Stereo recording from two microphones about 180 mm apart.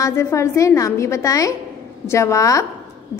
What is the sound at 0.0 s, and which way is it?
A child's voice, 15° left (ahead or behind).